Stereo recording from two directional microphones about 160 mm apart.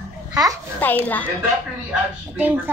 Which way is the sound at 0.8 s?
10° left (ahead or behind).